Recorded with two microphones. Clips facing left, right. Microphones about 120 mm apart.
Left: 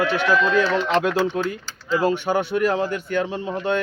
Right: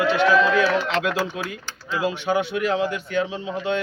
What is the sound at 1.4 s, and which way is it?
Speech, 40° left (ahead or behind).